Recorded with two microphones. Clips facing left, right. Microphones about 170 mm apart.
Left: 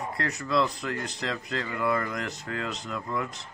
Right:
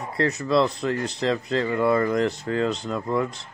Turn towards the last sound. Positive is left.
turn(degrees=-30)  # may be behind; listen again after turning